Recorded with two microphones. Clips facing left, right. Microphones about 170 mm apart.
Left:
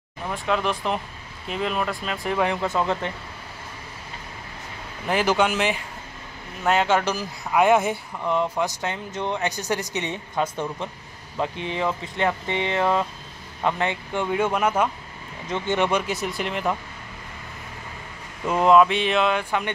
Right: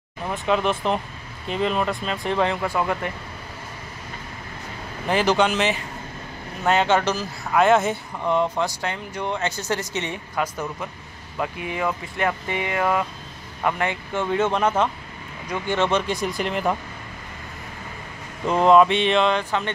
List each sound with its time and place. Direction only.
0.3 s speech: centre (ahead or behind); by 2.8 s 20° left (ahead or behind)
5.1 s a man's voice: 10° left (ahead or behind)
8.2 s speech: centre (ahead or behind)
8.5 s a woman's voice: 20° left (ahead or behind)
15.4 s a woman's voice: 20° left (ahead or behind)
16.1 s speech: 5° left (ahead or behind)
18.5 s speech: 5° left (ahead or behind)